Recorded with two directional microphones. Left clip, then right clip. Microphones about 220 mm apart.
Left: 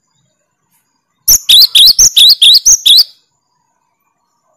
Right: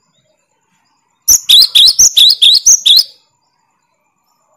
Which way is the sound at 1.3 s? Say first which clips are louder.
Left 1 dB; 20° left (ahead or behind).